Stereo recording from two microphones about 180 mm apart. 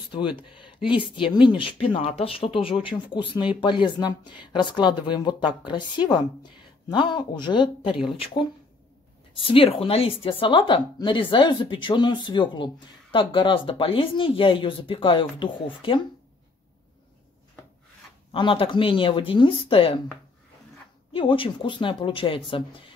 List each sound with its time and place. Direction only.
0.1 s speech: 25° left (ahead or behind)
9.3 s speech: 30° left (ahead or behind)
18.3 s speech: 30° left (ahead or behind)
21.1 s speech: 30° left (ahead or behind)